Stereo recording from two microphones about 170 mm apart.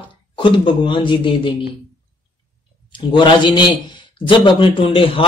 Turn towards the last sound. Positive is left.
turn(degrees=30)  # may be behind; listen again after turning